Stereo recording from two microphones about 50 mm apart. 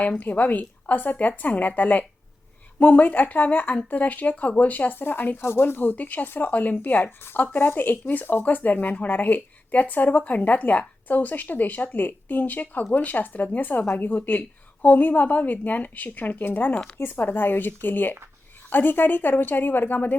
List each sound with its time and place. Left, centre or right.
0.0 s speech: left
4.9 s speech: left
5.4 s speech: left